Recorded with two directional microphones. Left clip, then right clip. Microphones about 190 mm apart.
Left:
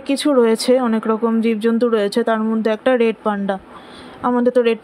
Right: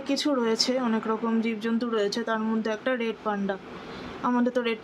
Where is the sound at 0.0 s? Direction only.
35° left (ahead or behind).